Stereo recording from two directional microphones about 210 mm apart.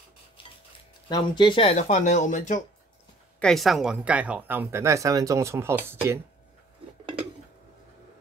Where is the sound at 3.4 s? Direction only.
Centre (ahead or behind).